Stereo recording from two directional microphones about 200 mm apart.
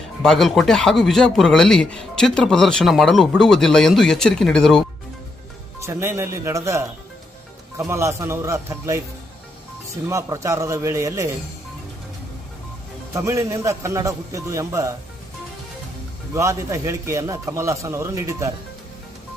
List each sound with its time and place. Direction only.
0.2 s speech: centre (ahead or behind)
5.8 s a man's voice: 15° right (ahead or behind)
10.1 s a man's voice: 15° right (ahead or behind)
13.1 s a man's voice: 15° right (ahead or behind)
16.3 s a man's voice: 15° right (ahead or behind)